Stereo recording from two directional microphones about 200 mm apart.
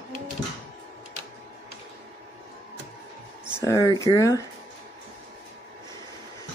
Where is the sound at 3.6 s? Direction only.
15° left (ahead or behind).